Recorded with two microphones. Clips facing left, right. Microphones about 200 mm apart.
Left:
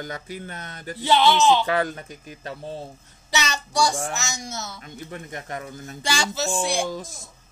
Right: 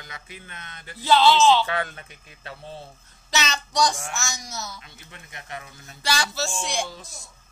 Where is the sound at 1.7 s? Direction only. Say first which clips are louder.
Left 5 dB; 35° left (ahead or behind).